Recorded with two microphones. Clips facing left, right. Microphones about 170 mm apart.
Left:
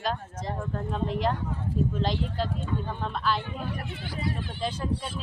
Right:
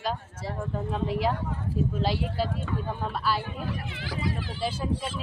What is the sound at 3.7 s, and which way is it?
Speech, 90° right.